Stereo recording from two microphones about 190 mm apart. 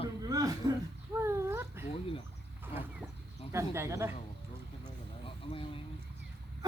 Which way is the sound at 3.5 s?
15° right (ahead or behind).